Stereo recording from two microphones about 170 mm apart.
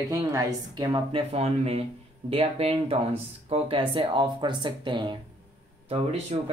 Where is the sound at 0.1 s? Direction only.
20° right (ahead or behind).